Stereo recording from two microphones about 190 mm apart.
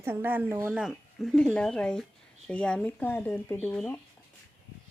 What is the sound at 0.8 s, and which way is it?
Speech, centre (ahead or behind).